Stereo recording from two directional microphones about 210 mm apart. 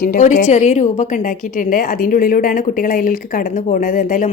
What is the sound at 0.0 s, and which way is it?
A woman's voice, 40° left (ahead or behind).